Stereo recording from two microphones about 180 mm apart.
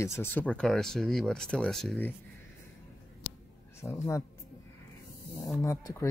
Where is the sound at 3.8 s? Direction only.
15° left (ahead or behind).